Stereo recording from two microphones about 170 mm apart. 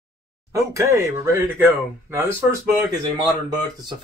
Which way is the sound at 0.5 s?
20° right (ahead or behind).